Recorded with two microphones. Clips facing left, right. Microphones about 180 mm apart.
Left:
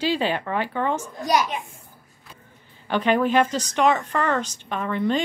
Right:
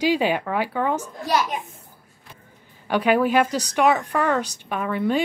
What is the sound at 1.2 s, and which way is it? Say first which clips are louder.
Speech: left 2 dB; 15° left (ahead or behind).